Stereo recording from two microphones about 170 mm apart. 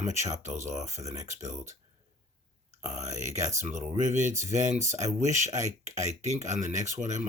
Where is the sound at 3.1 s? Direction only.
45° right (ahead or behind).